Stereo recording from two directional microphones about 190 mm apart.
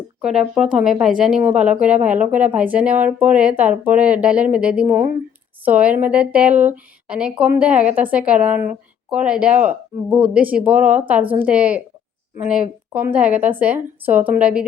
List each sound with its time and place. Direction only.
0.2 s a woman's voice: 5° right (ahead or behind)